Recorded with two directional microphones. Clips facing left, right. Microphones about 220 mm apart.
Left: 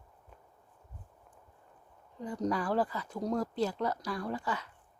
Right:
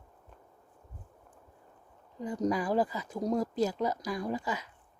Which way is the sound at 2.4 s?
15° right (ahead or behind).